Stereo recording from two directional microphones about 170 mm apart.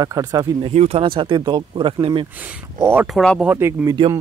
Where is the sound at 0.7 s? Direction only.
40° right (ahead or behind).